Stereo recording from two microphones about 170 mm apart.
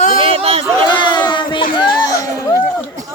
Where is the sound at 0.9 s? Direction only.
25° left (ahead or behind).